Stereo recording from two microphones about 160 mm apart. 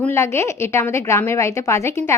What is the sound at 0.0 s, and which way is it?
A woman's voice, 15° left (ahead or behind).